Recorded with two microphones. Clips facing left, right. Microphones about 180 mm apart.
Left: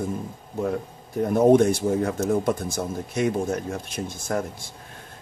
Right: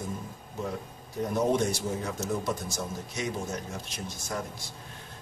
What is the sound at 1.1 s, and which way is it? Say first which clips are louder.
A man's voice: left 10 dB; 55° left (ahead or behind).